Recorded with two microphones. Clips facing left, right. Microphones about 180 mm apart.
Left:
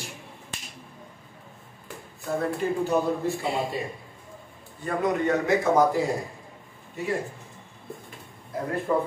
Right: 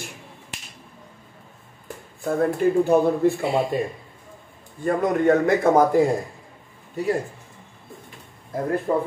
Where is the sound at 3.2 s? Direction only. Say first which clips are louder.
Right 7 dB; 55° right (ahead or behind).